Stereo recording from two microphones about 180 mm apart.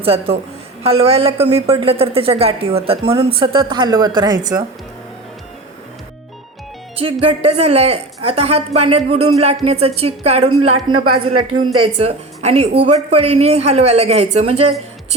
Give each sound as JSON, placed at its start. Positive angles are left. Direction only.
{"t": 0.0, "sound": "a woman's voice", "side_deg": -30}
{"t": 6.9, "sound": "a woman's voice", "side_deg": -30}